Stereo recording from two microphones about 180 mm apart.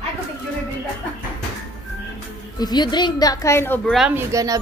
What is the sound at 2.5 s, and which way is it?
A woman's voice, 20° left (ahead or behind).